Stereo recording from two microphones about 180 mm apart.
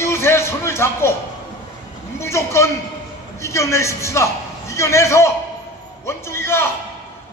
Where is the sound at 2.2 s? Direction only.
15° left (ahead or behind).